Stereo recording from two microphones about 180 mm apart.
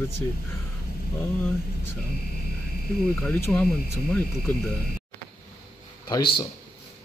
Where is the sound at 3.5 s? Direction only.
5° left (ahead or behind).